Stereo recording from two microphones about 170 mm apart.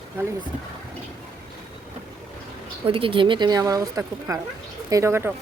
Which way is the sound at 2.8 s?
30° right (ahead or behind).